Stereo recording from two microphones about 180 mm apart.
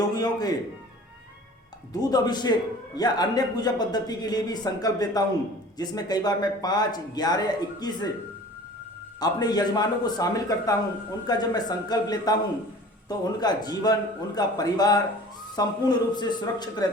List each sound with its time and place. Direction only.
0.0 s a man's voice: 20° left (ahead or behind)
1.9 s a man's voice: 20° left (ahead or behind)
9.2 s a man's voice: 20° left (ahead or behind)